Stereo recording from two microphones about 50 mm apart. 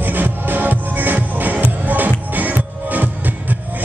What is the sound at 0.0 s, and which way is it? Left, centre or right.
Music, right.